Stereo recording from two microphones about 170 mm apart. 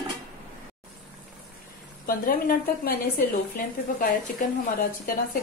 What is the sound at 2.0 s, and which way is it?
A woman's voice, 60° left (ahead or behind).